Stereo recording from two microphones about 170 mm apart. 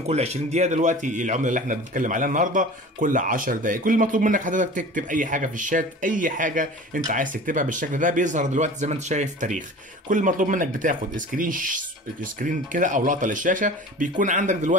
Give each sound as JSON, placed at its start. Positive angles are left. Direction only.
{"t": 0.0, "sound": "speech", "side_deg": -40}